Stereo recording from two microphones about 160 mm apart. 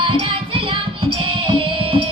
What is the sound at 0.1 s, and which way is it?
Music, 35° right (ahead or behind).